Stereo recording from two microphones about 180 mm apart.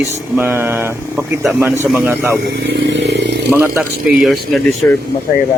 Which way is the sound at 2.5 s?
80° right.